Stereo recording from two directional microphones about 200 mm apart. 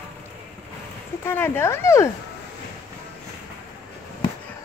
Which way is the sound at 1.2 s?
10° left (ahead or behind).